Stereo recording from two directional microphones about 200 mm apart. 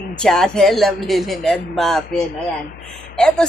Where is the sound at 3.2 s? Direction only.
5° left (ahead or behind).